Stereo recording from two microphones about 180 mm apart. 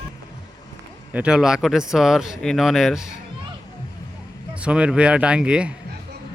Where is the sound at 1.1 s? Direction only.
5° right (ahead or behind).